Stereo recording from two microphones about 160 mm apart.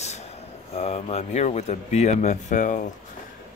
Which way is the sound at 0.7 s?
40° left (ahead or behind).